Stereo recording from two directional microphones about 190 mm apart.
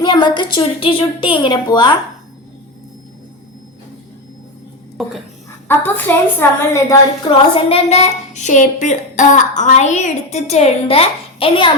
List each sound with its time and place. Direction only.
0.0 s a woman's voice: 25° left (ahead or behind)
5.0 s a sound: centre (ahead or behind)
5.6 s a woman's voice: 10° left (ahead or behind)
7.3 s a woman's voice: 30° left (ahead or behind)